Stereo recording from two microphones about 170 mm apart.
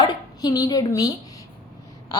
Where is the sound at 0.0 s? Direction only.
25° left (ahead or behind).